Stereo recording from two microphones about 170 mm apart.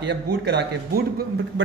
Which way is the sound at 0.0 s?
85° right.